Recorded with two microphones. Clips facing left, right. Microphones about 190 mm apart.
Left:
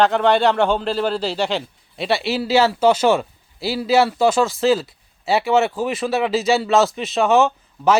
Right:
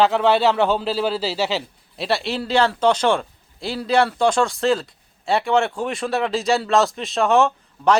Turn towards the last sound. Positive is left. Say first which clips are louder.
# left 1 dB
turn(degrees=0)  # may be behind; listen again after turning